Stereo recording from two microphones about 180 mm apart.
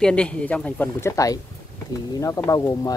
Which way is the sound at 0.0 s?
5° left (ahead or behind).